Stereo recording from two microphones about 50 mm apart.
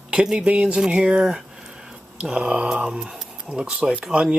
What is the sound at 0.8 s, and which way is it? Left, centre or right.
Speech, centre.